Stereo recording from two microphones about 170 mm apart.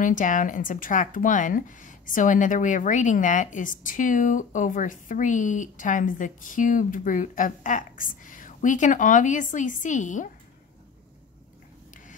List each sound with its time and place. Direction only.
0.0 s speech: 50° left (ahead or behind)